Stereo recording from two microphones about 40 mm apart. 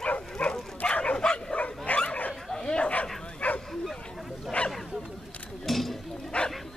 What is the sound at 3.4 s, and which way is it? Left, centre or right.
Bow-wow, left.